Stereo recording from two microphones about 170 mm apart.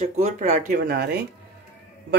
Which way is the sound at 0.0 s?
45° right (ahead or behind).